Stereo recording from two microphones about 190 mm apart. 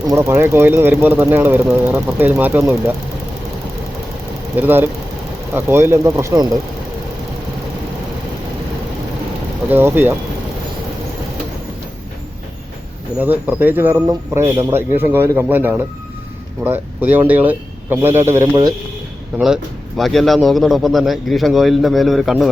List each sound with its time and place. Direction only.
0.1 s speech: 15° right (ahead or behind)
4.5 s speech: 10° right (ahead or behind)
9.6 s speech: 10° right (ahead or behind)
13.1 s speech: 10° right (ahead or behind)
20.0 s a man's voice: centre (ahead or behind)